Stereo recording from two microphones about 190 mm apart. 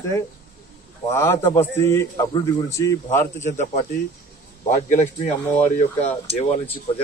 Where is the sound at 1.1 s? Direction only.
15° left (ahead or behind).